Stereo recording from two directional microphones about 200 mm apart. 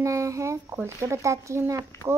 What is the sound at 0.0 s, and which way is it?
A child's voice, 15° right (ahead or behind).